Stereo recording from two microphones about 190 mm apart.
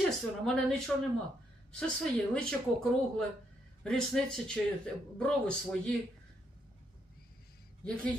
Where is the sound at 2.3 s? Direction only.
5° left (ahead or behind).